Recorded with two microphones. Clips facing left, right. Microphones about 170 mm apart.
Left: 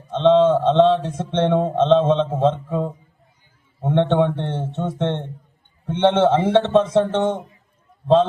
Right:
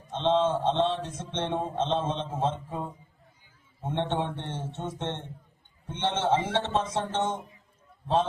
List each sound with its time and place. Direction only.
0.1 s a man's voice: 65° left (ahead or behind)